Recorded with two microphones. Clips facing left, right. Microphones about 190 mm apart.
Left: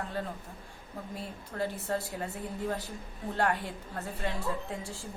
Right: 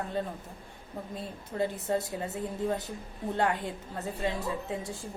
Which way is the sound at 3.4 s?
20° right (ahead or behind).